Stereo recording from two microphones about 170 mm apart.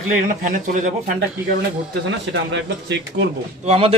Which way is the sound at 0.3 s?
50° right (ahead or behind).